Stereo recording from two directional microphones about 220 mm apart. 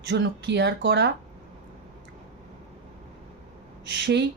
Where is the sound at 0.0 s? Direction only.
50° right (ahead or behind).